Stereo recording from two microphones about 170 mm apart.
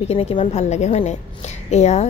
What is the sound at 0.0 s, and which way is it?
A woman's voice, 35° left (ahead or behind).